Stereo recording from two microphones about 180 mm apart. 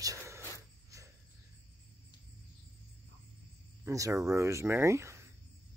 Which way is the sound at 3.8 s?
15° right (ahead or behind).